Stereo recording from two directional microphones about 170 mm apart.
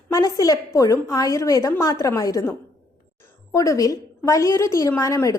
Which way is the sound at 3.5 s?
20° left (ahead or behind).